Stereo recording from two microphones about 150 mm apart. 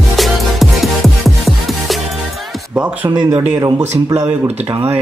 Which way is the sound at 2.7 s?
5° right (ahead or behind).